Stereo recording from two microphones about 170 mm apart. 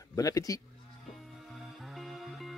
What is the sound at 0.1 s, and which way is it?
Speech, 20° left (ahead or behind).